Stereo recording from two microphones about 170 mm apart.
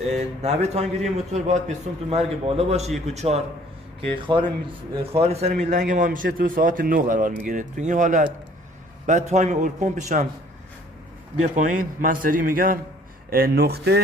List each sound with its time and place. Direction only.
0.1 s a man's voice: 40° right (ahead or behind)
11.5 s a man's voice: 50° right (ahead or behind)
13.3 s speech: 70° right (ahead or behind)